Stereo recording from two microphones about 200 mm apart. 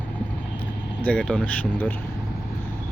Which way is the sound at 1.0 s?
5° left (ahead or behind).